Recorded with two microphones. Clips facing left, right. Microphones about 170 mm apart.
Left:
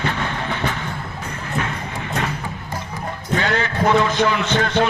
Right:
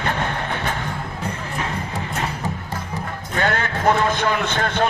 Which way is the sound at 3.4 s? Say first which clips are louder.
Right 1 dB; 55° right (ahead or behind).